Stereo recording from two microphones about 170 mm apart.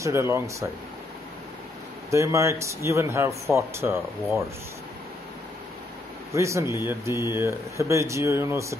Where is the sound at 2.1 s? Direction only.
15° right (ahead or behind).